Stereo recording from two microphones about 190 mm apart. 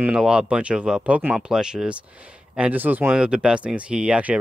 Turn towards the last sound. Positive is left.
turn(degrees=-5)  # may be behind; listen again after turning